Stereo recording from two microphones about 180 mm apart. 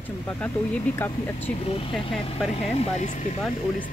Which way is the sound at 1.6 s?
30° left (ahead or behind).